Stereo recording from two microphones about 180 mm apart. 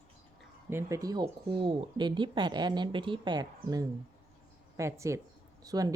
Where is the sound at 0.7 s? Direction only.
15° right (ahead or behind).